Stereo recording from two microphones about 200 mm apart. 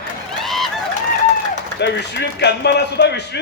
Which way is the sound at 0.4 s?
Centre (ahead or behind).